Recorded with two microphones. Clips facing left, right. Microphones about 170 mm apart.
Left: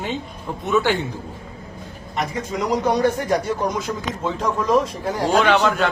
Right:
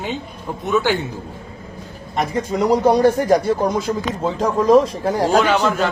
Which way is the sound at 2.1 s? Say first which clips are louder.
Right 4 dB; 35° right (ahead or behind).